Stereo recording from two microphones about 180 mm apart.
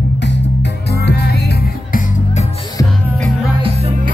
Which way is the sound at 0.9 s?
65° left (ahead or behind).